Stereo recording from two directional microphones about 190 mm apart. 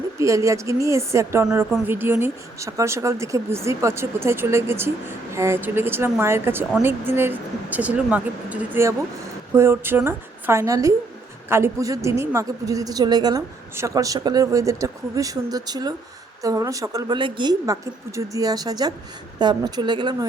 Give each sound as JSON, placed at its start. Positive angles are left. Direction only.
{"t": 0.2, "sound": "a woman's voice", "side_deg": -15}